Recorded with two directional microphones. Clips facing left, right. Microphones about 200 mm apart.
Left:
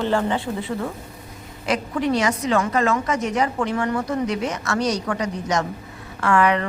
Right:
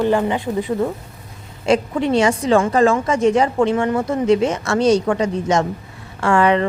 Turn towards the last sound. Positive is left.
turn(degrees=-30)  # may be behind; listen again after turning